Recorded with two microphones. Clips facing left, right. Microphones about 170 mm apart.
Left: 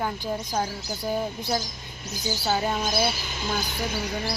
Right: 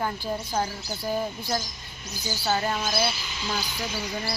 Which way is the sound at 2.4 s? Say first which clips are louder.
Even; 5° left (ahead or behind).